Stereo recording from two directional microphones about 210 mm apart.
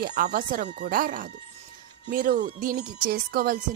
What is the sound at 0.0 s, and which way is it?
Speech, 45° right (ahead or behind).